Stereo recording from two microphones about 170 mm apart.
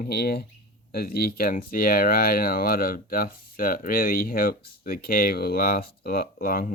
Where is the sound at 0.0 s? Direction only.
65° left (ahead or behind).